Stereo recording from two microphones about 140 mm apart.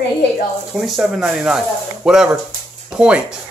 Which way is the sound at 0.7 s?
Centre (ahead or behind).